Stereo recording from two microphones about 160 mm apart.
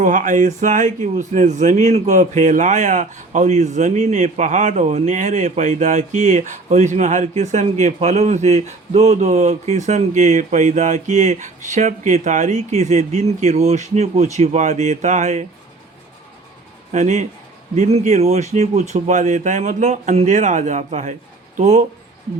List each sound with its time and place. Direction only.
0.0 s speech: 55° right (ahead or behind)
16.9 s speech: 45° right (ahead or behind)